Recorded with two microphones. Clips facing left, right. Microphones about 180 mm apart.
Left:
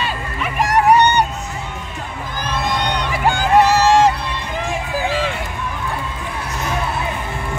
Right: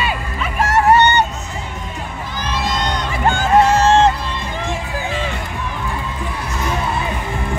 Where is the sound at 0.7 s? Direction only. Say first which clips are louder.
Even; 15° left (ahead or behind).